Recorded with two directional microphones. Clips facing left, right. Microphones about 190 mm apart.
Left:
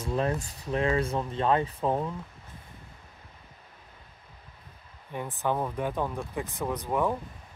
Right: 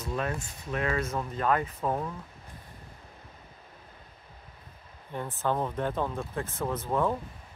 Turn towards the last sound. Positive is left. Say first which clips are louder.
# even
turn(degrees=15)  # may be behind; listen again after turning